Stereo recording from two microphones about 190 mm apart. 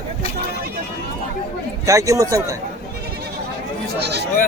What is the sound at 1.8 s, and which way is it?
Speech, 15° right (ahead or behind).